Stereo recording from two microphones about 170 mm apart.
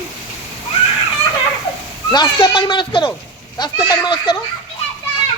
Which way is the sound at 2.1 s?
25° left (ahead or behind).